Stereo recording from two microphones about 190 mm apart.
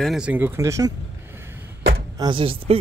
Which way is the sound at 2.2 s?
25° right (ahead or behind).